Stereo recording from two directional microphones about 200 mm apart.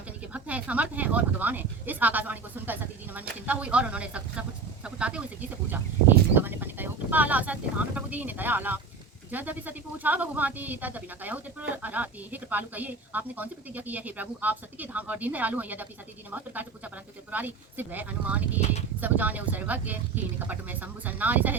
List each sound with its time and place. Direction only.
0.3 s speech: 5° right (ahead or behind)
6.3 s speech: 10° right (ahead or behind)